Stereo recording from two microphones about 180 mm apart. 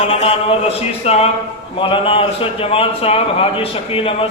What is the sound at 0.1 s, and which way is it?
A man's voice, 30° left (ahead or behind).